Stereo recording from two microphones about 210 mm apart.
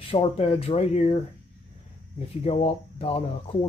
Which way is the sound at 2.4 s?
30° left (ahead or behind).